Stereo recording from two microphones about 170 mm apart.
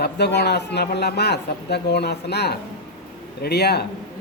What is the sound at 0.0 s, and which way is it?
A man's voice, 80° left.